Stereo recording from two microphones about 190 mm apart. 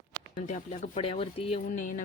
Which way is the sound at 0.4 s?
35° left (ahead or behind).